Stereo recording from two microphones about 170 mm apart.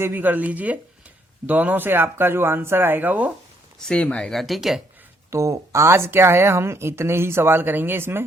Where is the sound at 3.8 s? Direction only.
5° left (ahead or behind); by 8.2 s 15° right (ahead or behind).